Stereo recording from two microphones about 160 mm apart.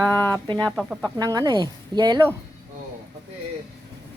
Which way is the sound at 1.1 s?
25° right (ahead or behind).